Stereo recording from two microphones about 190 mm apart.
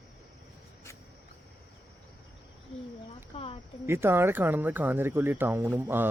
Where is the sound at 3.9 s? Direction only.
15° right (ahead or behind).